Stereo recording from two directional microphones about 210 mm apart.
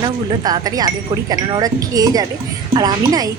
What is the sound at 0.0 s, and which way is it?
Speech, 20° right (ahead or behind).